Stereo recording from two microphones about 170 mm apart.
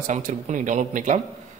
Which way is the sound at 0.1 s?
45° right (ahead or behind).